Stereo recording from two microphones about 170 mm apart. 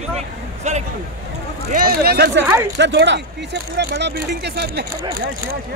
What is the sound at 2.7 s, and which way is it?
Speech, 90° right.